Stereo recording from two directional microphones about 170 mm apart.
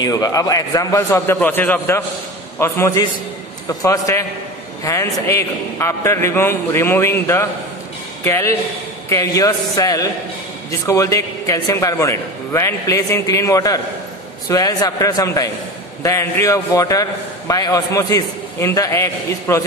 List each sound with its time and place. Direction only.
0.0 s a man's voice: 20° left (ahead or behind)